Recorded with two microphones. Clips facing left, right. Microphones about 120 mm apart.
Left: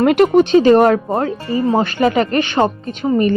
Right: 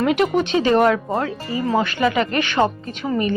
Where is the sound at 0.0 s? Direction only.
50° left (ahead or behind).